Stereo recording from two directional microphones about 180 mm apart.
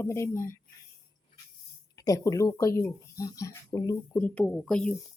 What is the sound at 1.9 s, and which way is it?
Speech, 20° left (ahead or behind).